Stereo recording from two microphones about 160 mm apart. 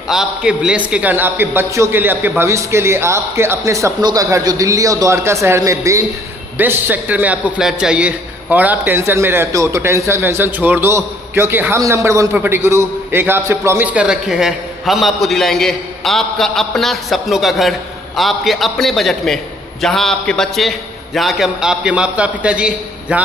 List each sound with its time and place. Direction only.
0.1 s a man's voice: 5° right (ahead or behind)